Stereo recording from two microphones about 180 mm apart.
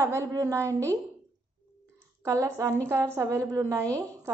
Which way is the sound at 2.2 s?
20° right (ahead or behind).